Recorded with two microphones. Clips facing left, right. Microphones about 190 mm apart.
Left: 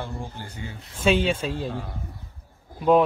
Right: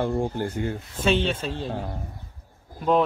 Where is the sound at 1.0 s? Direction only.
10° left (ahead or behind).